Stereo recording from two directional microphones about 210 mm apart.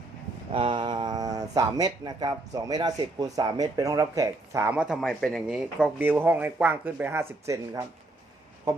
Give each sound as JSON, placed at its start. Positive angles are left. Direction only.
{"t": 0.5, "sound": "speech", "side_deg": -25}